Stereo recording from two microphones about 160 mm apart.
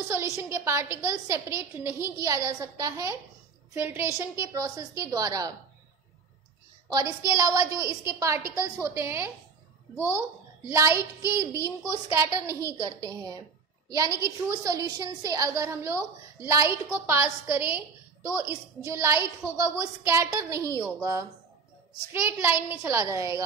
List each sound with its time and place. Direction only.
0.1 s a woman's voice: 15° right (ahead or behind)
6.9 s a woman's voice: 20° right (ahead or behind)